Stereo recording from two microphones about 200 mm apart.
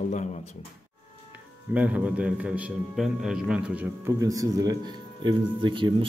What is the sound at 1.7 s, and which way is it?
A man's voice, 5° right (ahead or behind).